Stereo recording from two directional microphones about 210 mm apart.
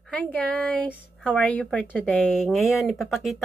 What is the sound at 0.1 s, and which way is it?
Speech, 5° left (ahead or behind).